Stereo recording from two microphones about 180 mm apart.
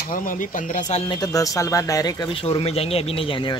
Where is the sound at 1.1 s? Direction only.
20° left (ahead or behind).